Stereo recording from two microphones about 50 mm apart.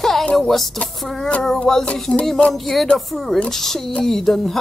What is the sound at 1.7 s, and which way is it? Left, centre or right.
Speech, centre.